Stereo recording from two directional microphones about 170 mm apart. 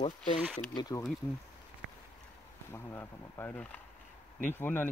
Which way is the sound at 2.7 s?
15° left (ahead or behind).